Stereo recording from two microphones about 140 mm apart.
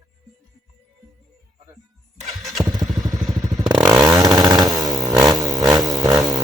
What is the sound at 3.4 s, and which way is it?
Motorcycle, 25° right (ahead or behind).